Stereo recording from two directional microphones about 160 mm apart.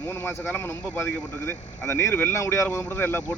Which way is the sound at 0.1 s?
15° left (ahead or behind).